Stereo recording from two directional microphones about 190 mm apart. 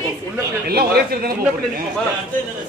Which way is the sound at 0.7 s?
55° right (ahead or behind).